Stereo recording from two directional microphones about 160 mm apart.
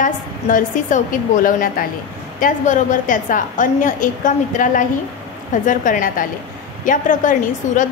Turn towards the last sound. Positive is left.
turn(degrees=55)  # may be behind; listen again after turning